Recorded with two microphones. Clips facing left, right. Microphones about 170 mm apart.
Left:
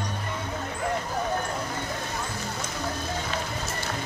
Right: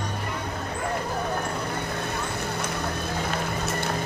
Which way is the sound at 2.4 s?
60° right (ahead or behind).